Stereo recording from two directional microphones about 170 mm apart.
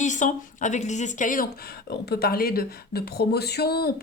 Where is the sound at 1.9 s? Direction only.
70° left (ahead or behind).